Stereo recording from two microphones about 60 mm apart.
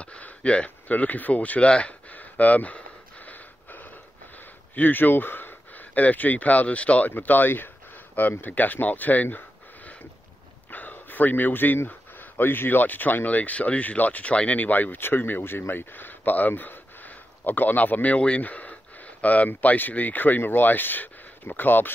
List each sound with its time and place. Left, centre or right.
0.0 s speech: centre
3.3 s a sound: left
4.7 s speech: left
7.1 s speech: left
10.7 s speech: left